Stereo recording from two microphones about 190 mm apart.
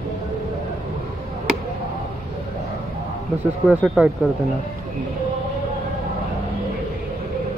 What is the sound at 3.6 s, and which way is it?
Speech, 5° right (ahead or behind).